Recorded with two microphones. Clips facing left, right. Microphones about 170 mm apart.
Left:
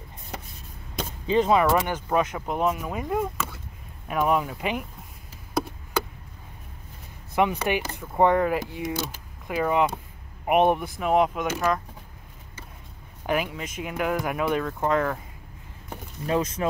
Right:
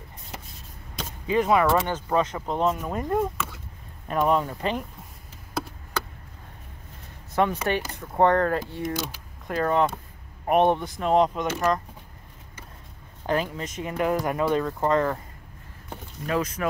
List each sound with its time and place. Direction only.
1.2 s speech: 25° left (ahead or behind)
7.3 s speech: 10° left (ahead or behind)
13.3 s speech: 10° left (ahead or behind)
16.3 s speech: 25° left (ahead or behind)